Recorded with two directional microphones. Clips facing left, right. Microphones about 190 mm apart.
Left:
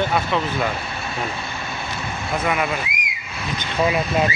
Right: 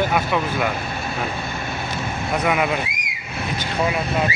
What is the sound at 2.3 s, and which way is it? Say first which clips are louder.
Speech: right 2 dB; 15° right (ahead or behind).